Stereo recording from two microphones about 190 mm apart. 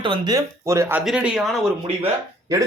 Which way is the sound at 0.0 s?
25° right (ahead or behind).